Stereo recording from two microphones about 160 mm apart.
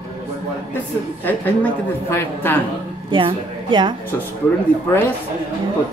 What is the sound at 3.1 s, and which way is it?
Speech, 30° right (ahead or behind).